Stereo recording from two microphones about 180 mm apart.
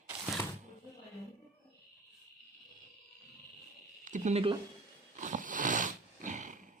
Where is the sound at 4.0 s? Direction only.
45° right (ahead or behind).